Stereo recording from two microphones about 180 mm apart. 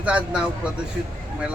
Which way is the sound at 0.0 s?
5° right (ahead or behind).